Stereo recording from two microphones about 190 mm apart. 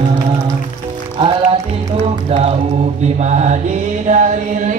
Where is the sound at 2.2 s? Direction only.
30° right (ahead or behind).